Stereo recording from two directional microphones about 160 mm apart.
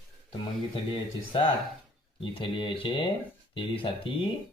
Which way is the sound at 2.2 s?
30° left (ahead or behind).